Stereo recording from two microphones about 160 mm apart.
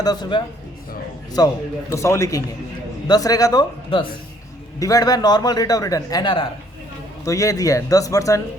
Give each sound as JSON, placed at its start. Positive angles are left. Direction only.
{"t": 0.0, "sound": "a man's voice", "side_deg": 25}
{"t": 1.9, "sound": "a man's voice", "side_deg": 20}